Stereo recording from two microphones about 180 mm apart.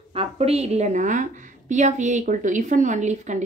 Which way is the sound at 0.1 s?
35° right (ahead or behind).